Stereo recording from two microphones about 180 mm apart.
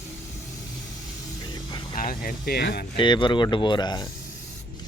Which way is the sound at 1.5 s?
25° left (ahead or behind).